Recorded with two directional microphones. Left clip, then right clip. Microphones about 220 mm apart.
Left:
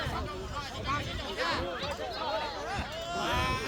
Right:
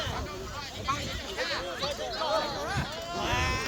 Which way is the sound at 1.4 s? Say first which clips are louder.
Left 1 dB; 45° left (ahead or behind).